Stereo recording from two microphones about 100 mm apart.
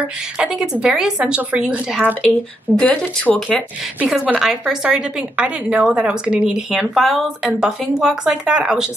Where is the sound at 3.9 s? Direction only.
10° right (ahead or behind).